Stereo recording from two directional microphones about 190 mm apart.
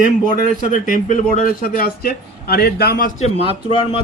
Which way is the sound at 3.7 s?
30° left (ahead or behind).